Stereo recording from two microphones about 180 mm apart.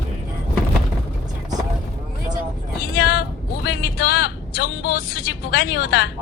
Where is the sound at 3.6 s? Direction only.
60° left (ahead or behind).